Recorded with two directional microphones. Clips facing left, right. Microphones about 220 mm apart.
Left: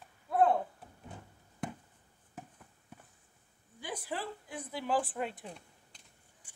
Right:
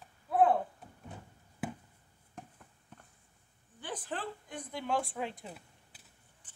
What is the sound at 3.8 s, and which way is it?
A woman's voice, 10° left (ahead or behind).